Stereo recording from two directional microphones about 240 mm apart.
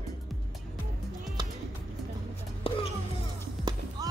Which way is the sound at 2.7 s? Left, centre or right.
Left.